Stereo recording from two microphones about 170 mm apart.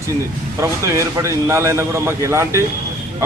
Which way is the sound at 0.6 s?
15° right (ahead or behind).